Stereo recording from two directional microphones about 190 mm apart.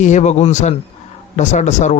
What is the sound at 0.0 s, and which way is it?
A man's voice, 40° left (ahead or behind).